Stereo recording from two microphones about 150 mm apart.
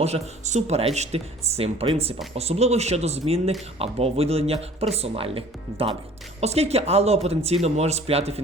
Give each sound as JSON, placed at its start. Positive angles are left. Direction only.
{"t": 0.0, "sound": "speech", "side_deg": -50}